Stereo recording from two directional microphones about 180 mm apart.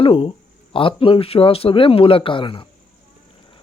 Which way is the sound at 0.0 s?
30° left (ahead or behind).